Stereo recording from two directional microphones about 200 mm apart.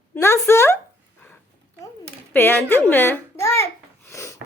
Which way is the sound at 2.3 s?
10° left (ahead or behind).